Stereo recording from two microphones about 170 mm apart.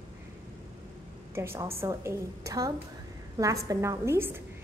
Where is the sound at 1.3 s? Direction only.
15° right (ahead or behind).